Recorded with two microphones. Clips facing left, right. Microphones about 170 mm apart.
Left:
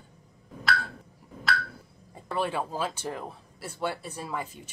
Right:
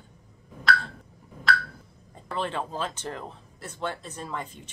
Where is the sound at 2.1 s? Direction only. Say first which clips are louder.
Left 1 dB; 10° left (ahead or behind).